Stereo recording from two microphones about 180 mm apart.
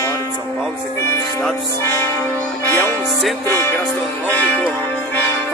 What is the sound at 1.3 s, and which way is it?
Music, 10° left (ahead or behind).